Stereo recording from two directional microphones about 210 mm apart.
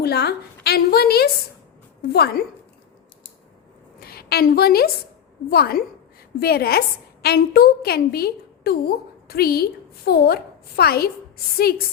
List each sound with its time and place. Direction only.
0.0 s a woman's voice: 50° left (ahead or behind)
4.0 s a woman's voice: 45° left (ahead or behind)